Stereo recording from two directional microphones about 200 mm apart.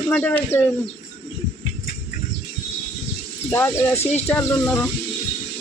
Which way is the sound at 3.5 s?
10° left (ahead or behind).